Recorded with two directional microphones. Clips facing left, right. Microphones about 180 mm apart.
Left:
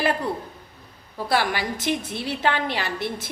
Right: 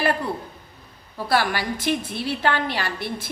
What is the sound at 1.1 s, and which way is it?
A woman's voice, 20° left (ahead or behind).